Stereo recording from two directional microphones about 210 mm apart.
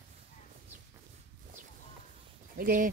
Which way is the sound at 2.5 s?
40° right (ahead or behind).